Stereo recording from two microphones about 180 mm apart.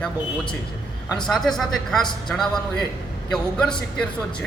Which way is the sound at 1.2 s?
5° left (ahead or behind).